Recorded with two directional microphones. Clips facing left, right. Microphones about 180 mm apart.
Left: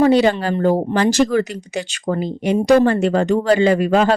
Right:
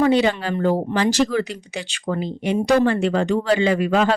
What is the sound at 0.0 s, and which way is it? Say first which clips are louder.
Speech: left 4 dB; 40° left (ahead or behind).